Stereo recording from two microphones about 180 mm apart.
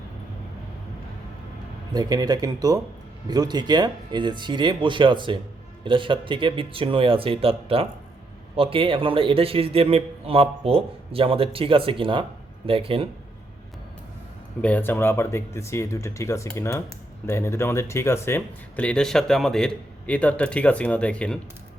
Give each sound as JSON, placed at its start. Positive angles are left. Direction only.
{"t": 1.9, "sound": "a man's voice", "side_deg": -20}
{"t": 14.6, "sound": "speech", "side_deg": 10}